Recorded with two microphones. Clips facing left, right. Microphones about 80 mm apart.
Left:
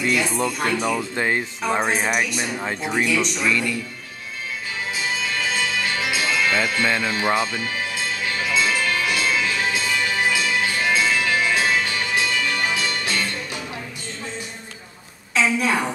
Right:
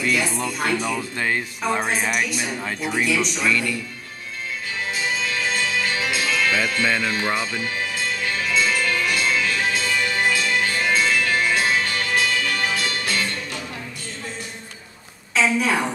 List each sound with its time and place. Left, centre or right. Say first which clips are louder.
0.2 s speech: left 2 dB; centre
1.1 s speech: left 2 dB; centre
1.8 s speech: left 4 dB; centre
2.6 s speech: left 1 dB; centre
2.9 s speech: even; centre
5.0 s music: even; centre
15.3 s a woman's voice: even; centre